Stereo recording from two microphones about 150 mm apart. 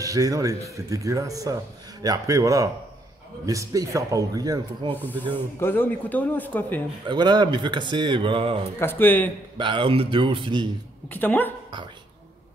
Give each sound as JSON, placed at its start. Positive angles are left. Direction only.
{"t": 0.0, "sound": "speech", "side_deg": -25}
{"t": 4.9, "sound": "speech", "side_deg": 10}
{"t": 7.1, "sound": "speech", "side_deg": -30}
{"t": 8.7, "sound": "speech", "side_deg": 15}
{"t": 9.6, "sound": "speech", "side_deg": -35}
{"t": 11.1, "sound": "speech", "side_deg": 10}